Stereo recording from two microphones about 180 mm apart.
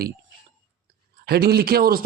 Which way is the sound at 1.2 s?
60° right (ahead or behind).